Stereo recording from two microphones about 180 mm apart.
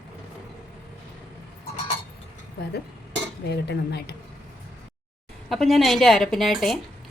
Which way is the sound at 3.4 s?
70° left (ahead or behind).